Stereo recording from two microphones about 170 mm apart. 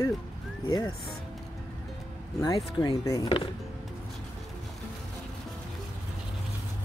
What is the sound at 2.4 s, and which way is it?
Speech, 20° left (ahead or behind).